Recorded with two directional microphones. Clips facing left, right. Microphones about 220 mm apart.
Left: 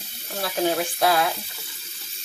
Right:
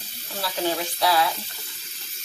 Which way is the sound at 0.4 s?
50° left (ahead or behind).